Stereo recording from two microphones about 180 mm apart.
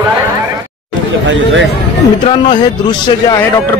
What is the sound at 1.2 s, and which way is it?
Speech, 90° right.